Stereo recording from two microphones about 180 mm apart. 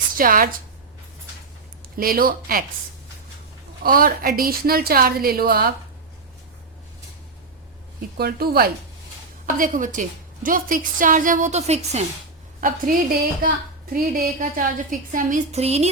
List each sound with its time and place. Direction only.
0.2 s a woman's voice: 50° right (ahead or behind)
2.0 s a woman's voice: 55° right (ahead or behind)
3.8 s a woman's voice: 55° right (ahead or behind)
8.2 s a woman's voice: 60° right (ahead or behind)
9.6 s a woman's voice: 45° right (ahead or behind)
12.5 s a woman's voice: 50° right (ahead or behind)
13.9 s a woman's voice: 50° right (ahead or behind)